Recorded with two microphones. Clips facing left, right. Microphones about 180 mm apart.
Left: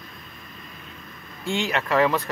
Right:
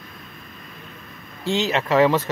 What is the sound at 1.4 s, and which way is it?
Speech, 25° right (ahead or behind).